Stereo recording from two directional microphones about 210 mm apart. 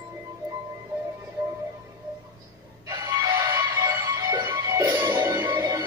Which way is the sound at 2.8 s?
15° right (ahead or behind).